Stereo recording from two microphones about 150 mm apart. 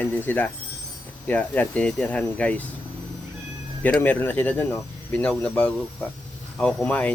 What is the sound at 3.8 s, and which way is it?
Speech, 10° left (ahead or behind).